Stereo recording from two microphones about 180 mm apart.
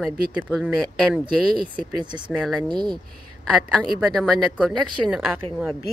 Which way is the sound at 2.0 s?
25° right (ahead or behind).